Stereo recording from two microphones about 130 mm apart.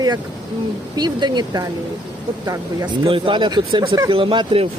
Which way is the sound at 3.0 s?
40° right (ahead or behind).